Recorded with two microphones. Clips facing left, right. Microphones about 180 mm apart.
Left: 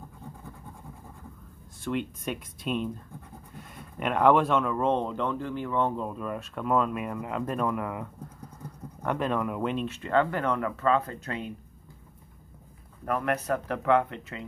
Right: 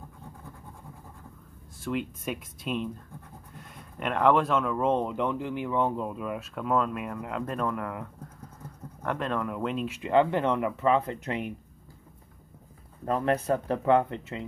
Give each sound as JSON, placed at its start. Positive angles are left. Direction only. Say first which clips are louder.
{"t": 1.8, "sound": "speech", "louder": "left 1 dB", "side_deg": 0}
{"t": 9.8, "sound": "speech", "louder": "right 5 dB", "side_deg": -15}
{"t": 13.0, "sound": "speech", "louder": "right 2 dB", "side_deg": -25}